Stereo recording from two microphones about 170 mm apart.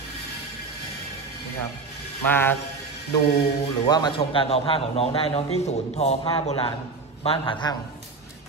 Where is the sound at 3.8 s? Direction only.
25° left (ahead or behind).